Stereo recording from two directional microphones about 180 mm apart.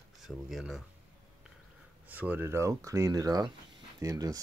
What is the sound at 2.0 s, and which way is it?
Speech, 10° right (ahead or behind).